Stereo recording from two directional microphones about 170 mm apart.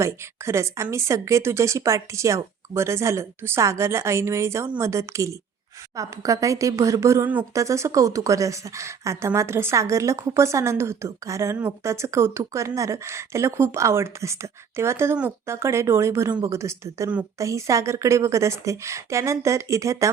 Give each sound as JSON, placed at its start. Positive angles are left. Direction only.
{"t": 0.0, "sound": "speech", "side_deg": -15}